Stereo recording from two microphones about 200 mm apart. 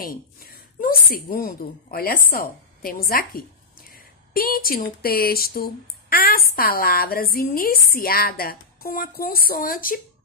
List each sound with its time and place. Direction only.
0.0 s a woman's voice: 45° left (ahead or behind)